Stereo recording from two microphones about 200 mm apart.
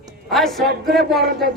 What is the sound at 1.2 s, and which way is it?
Speech, 55° right (ahead or behind).